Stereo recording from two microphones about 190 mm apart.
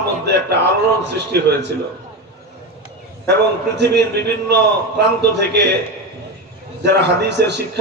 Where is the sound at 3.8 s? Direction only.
60° right (ahead or behind).